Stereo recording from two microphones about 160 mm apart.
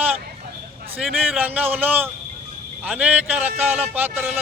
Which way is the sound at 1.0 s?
10° right (ahead or behind).